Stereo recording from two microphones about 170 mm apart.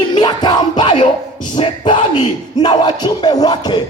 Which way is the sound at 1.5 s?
30° left (ahead or behind).